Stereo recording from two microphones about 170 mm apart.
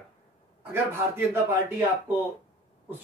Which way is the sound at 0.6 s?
15° right (ahead or behind).